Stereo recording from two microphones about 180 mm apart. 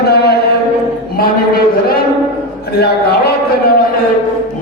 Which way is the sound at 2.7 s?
60° left (ahead or behind).